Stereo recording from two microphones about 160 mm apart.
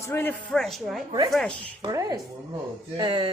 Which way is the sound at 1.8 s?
25° right (ahead or behind).